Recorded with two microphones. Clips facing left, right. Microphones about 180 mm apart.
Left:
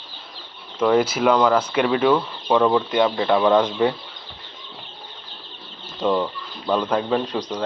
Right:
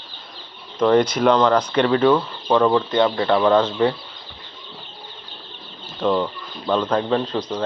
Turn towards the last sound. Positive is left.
turn(degrees=10)  # may be behind; listen again after turning